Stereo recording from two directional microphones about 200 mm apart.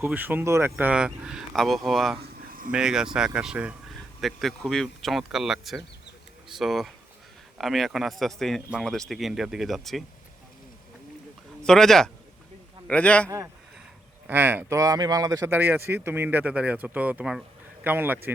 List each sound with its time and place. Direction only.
0.0 s a man's voice: 10° right (ahead or behind)
2.5 s a sound: 45° right (ahead or behind)
2.7 s a man's voice: 5° right (ahead or behind)
11.6 s a man's voice: centre (ahead or behind)
14.3 s speech: 10° right (ahead or behind)